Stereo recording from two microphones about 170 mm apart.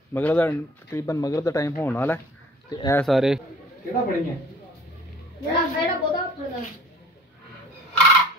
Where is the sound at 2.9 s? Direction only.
Centre (ahead or behind).